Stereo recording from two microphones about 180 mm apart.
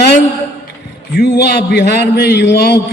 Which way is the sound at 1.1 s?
65° left (ahead or behind).